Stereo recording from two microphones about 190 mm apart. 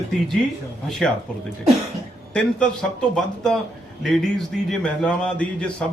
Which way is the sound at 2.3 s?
5° left (ahead or behind).